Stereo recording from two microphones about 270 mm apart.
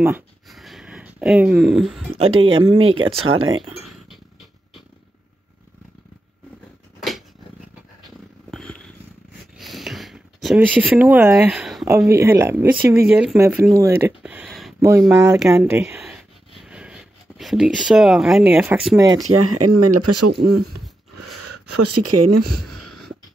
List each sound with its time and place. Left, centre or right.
0.0 s speech: centre
2.1 s speech: centre
2.6 s speech: right
7.0 s cat: centre
8.5 s purr: centre
9.6 s speech: centre
14.9 s speech: centre
19.2 s speech: right
21.1 s a sound: right
22.8 s wheeze: centre